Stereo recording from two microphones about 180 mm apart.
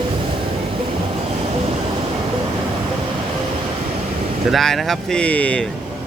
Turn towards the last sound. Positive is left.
turn(degrees=5)  # may be behind; listen again after turning